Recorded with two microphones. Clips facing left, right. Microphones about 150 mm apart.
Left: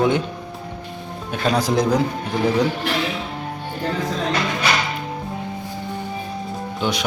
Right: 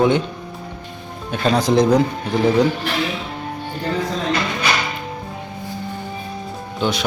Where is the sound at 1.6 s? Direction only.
5° left (ahead or behind).